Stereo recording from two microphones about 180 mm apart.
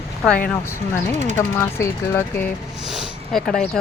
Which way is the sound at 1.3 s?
15° left (ahead or behind).